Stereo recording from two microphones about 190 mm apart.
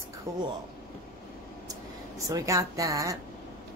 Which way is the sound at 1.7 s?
15° right (ahead or behind).